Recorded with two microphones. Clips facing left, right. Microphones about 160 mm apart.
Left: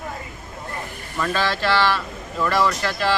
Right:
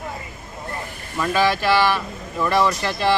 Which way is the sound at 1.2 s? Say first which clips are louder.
Right 3 dB; 15° right (ahead or behind).